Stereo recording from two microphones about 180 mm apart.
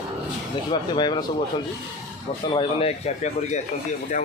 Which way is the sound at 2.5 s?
35° left (ahead or behind).